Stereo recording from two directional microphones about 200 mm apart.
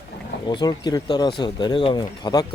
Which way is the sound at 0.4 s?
20° left (ahead or behind).